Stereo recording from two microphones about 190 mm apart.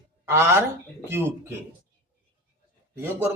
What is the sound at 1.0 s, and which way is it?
Speech, 15° right (ahead or behind).